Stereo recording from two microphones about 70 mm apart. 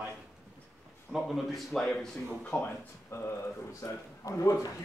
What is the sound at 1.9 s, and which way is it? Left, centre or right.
Speech, centre.